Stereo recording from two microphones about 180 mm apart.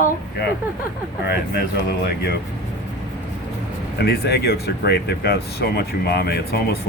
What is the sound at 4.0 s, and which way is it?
Speech, 60° left (ahead or behind).